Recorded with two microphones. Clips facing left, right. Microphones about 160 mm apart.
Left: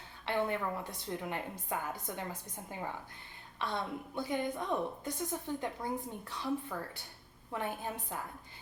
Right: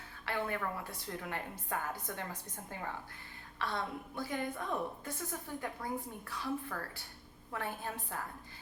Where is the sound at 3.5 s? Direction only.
20° left (ahead or behind).